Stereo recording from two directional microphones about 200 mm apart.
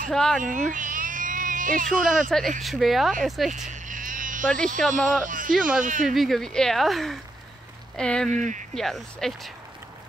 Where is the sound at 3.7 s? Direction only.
40° right (ahead or behind).